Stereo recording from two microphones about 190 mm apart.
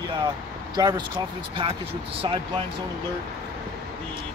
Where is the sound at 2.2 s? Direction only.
25° right (ahead or behind).